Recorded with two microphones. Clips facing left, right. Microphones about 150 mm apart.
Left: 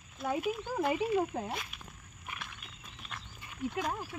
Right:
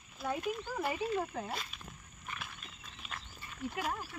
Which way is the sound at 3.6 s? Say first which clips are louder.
Left 3 dB; 5° right (ahead or behind).